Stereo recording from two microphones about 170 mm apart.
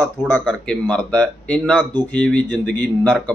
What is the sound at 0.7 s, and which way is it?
Speech, 5° left (ahead or behind).